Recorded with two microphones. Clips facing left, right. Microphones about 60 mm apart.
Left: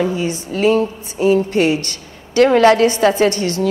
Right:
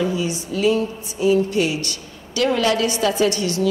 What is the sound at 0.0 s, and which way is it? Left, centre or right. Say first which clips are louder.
A woman's voice: left 3 dB; left.